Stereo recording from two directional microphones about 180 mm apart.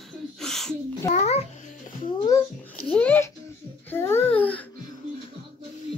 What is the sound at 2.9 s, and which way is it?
Babbling, 10° left (ahead or behind).